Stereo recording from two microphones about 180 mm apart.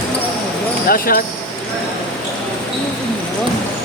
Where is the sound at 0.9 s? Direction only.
55° left (ahead or behind).